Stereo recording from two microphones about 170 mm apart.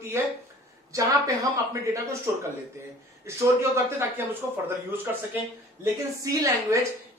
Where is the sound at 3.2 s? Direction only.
15° right (ahead or behind).